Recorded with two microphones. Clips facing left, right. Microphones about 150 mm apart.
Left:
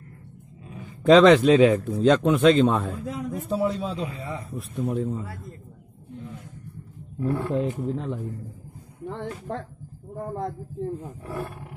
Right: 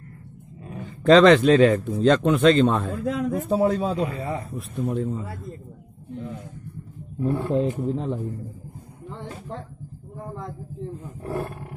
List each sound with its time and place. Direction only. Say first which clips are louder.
1.0 s speech: even; 5° left (ahead or behind)
3.0 s speech: right 6 dB; 75° right (ahead or behind)
3.3 s speech: right 3 dB; 50° right (ahead or behind)
4.5 s speech: right 1 dB; centre (ahead or behind)
7.2 s speech: right 2 dB; 15° right (ahead or behind)
7.5 s speech: right 3 dB; 30° right (ahead or behind)
9.0 s speech: left 4 dB; 60° left (ahead or behind)
10.1 s a man's voice: left 5 dB; 45° left (ahead or behind)
11.2 s speech: right 5 dB; 45° right (ahead or behind)